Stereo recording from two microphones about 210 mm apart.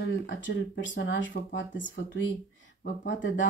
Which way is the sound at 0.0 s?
55° left (ahead or behind).